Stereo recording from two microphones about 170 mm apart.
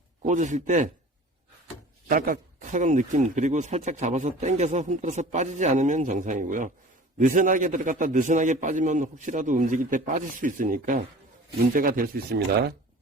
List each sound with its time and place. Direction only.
0.3 s speech: 45° right (ahead or behind)
2.0 s speech: 55° right (ahead or behind)